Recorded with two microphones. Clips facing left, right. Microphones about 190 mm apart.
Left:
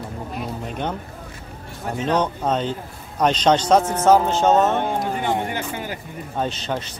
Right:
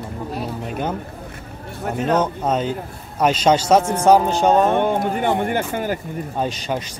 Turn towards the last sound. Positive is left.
turn(degrees=-10)  # may be behind; listen again after turning